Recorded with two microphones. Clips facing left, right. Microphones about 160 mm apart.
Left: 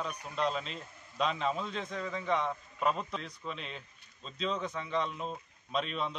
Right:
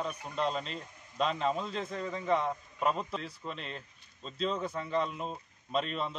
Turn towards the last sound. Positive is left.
turn(degrees=0)  # may be behind; listen again after turning